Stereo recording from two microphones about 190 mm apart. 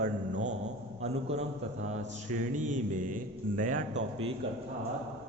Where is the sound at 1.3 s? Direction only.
35° right (ahead or behind).